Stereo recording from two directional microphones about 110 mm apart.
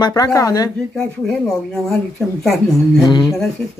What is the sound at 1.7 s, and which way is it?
Speech, 5° left (ahead or behind).